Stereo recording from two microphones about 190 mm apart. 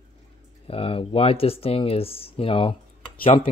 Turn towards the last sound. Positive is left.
turn(degrees=30)  # may be behind; listen again after turning